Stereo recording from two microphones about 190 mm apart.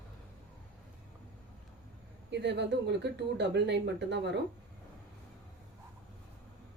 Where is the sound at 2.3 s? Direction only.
65° right (ahead or behind).